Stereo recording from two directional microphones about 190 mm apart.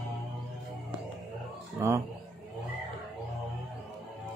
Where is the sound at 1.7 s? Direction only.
15° right (ahead or behind).